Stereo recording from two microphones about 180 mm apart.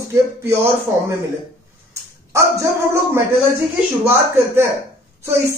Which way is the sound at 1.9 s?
15° right (ahead or behind).